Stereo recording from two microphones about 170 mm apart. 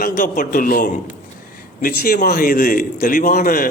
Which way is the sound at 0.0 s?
55° left (ahead or behind).